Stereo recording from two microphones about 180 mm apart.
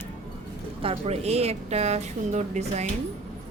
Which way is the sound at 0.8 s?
35° right (ahead or behind).